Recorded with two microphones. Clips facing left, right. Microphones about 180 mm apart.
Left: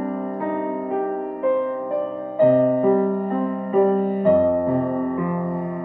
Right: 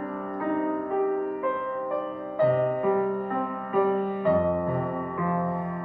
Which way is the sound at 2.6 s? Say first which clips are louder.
Left 7 dB; 30° left (ahead or behind).